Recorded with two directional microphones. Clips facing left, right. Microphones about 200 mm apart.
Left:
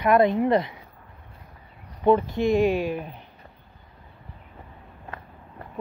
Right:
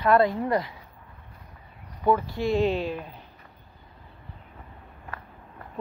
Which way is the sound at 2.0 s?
20° left (ahead or behind).